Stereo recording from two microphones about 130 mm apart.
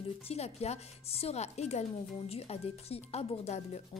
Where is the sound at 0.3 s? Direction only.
55° left (ahead or behind).